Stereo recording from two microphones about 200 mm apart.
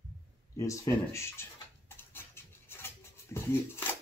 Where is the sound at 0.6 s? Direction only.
15° left (ahead or behind).